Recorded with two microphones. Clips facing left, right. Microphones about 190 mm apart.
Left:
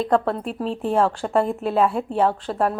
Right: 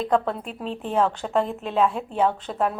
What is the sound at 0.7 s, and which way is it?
Speech, 35° left (ahead or behind).